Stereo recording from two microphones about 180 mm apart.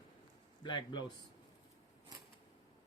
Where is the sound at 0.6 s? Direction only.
25° left (ahead or behind).